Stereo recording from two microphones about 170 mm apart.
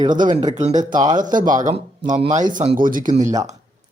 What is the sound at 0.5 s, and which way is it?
Speech, 45° right (ahead or behind).